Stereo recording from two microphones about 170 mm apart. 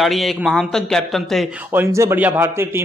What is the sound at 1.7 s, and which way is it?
A man's voice, 15° right (ahead or behind).